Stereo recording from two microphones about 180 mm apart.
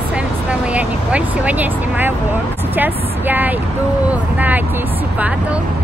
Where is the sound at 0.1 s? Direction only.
5° right (ahead or behind).